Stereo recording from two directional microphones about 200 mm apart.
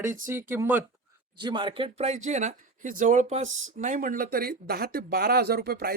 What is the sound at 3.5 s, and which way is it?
Speech, 80° right.